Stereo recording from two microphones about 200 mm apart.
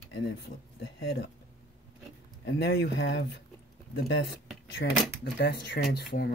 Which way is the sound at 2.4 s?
55° left (ahead or behind).